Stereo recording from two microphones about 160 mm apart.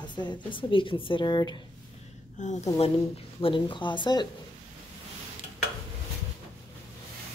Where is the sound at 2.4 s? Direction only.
45° left (ahead or behind).